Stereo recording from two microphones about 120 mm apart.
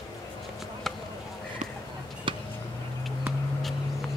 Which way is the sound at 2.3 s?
45° right (ahead or behind).